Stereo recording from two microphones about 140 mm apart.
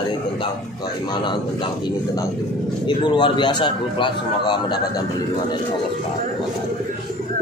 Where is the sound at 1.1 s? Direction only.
35° left (ahead or behind).